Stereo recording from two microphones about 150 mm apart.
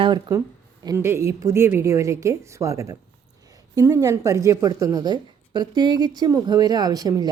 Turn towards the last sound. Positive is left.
turn(degrees=-25)  # may be behind; listen again after turning